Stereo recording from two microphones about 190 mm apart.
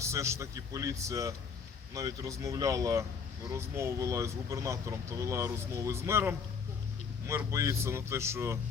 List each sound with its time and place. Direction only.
0.0 s speech: 15° right (ahead or behind)